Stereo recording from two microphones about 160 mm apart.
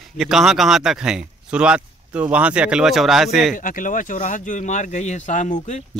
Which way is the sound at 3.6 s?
55° left (ahead or behind).